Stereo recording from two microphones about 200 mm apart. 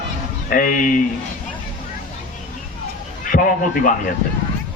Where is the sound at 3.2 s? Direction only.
45° left (ahead or behind).